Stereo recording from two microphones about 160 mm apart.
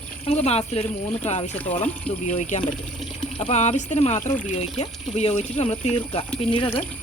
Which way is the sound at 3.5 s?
45° left (ahead or behind).